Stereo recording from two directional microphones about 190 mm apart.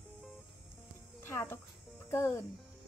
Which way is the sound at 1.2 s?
10° left (ahead or behind).